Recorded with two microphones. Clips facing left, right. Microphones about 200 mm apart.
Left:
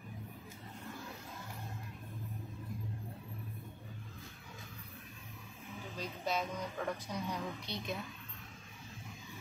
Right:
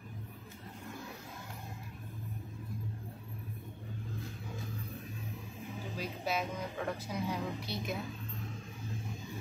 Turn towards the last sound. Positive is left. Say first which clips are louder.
# right 3 dB
turn(degrees=-5)  # may be behind; listen again after turning